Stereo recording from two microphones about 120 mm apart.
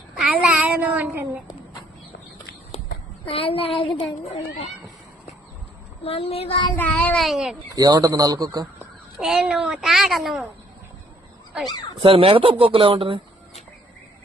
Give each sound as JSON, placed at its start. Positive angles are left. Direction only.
{"t": 0.2, "sound": "child singing", "side_deg": -5}
{"t": 3.2, "sound": "speech", "side_deg": 55}
{"t": 6.1, "sound": "child singing", "side_deg": 55}
{"t": 6.7, "sound": "child singing", "side_deg": 15}
{"t": 7.3, "sound": "a child's voice", "side_deg": -5}
{"t": 7.8, "sound": "a man's voice", "side_deg": -35}
{"t": 9.2, "sound": "a child's voice", "side_deg": -5}
{"t": 12.0, "sound": "speech", "side_deg": -50}